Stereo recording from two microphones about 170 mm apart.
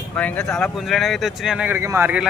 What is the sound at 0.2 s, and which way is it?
A man's voice, 5° left (ahead or behind).